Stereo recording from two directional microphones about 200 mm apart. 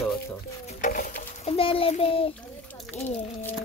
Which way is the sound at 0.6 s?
40° left (ahead or behind).